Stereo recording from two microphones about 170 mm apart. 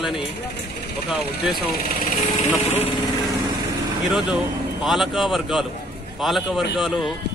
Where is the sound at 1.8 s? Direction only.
55° left (ahead or behind).